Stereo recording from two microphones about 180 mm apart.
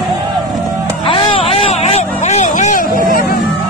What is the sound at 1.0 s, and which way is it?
Vehicle, 30° left (ahead or behind).